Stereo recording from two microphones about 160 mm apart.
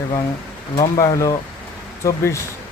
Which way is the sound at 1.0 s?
20° left (ahead or behind).